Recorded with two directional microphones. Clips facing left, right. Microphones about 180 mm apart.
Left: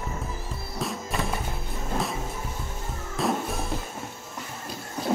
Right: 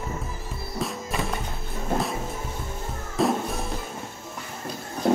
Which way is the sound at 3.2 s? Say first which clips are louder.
Right 3 dB; centre (ahead or behind).